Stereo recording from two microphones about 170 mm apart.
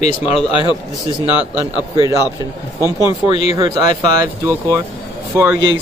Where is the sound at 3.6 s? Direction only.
20° right (ahead or behind).